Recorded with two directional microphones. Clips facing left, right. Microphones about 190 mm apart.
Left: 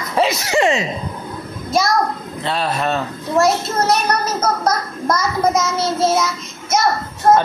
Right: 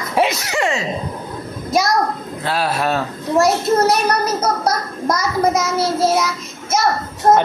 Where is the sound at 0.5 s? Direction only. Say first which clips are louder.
Left 4 dB; 20° left (ahead or behind).